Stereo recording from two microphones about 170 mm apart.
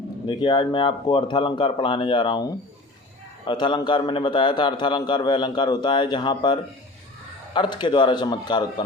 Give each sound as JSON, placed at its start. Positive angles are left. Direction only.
{"t": 0.3, "sound": "a man's voice", "side_deg": 25}